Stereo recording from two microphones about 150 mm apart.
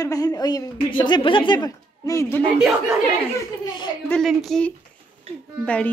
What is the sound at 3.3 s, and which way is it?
Speech, 25° left (ahead or behind).